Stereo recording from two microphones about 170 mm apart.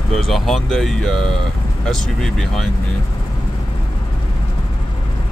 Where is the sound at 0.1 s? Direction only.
Centre (ahead or behind).